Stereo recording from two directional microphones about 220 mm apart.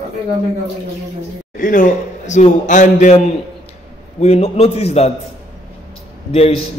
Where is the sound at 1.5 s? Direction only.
40° left (ahead or behind).